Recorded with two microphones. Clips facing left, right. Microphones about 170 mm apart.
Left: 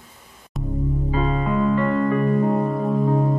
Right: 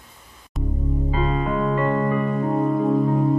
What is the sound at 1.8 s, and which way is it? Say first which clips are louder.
Music: left 1 dB; 20° right (ahead or behind).